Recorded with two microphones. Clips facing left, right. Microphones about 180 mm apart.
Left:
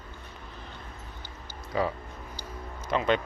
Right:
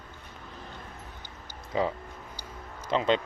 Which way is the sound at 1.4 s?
20° right (ahead or behind).